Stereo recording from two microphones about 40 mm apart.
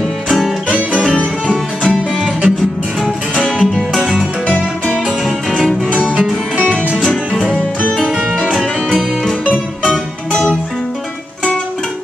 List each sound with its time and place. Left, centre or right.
1.1 s music: left
1.9 s music: right
3.4 s music: centre
7.0 s music: centre
8.5 s music: centre